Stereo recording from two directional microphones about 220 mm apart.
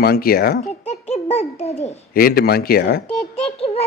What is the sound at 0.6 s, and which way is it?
A child's voice, 30° left (ahead or behind).